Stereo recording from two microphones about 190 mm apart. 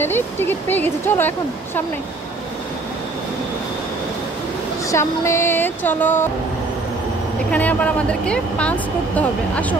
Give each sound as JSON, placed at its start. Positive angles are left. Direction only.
{"t": 0.0, "sound": "speech", "side_deg": 10}
{"t": 4.9, "sound": "speech", "side_deg": 15}
{"t": 7.5, "sound": "speech", "side_deg": 5}